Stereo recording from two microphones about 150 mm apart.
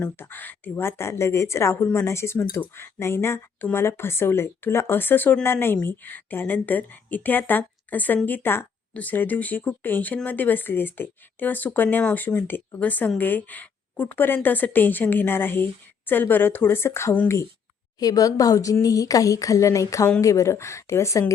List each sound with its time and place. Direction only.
0.0 s a woman's voice: 15° left (ahead or behind)